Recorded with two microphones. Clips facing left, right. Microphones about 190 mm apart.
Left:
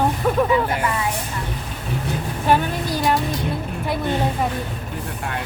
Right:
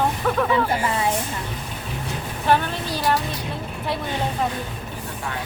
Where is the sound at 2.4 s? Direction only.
10° left (ahead or behind).